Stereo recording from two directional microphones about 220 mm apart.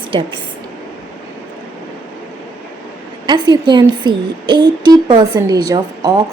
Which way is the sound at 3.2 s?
20° right (ahead or behind).